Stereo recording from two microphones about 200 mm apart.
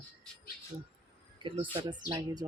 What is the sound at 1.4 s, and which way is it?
Speech, 25° right (ahead or behind).